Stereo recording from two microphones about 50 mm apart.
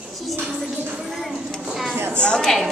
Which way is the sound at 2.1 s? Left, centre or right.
Left.